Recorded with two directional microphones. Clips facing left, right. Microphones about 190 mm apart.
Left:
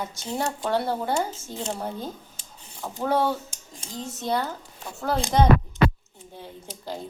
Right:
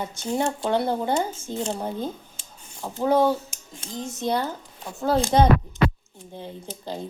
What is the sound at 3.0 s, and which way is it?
A woman's voice, 10° right (ahead or behind).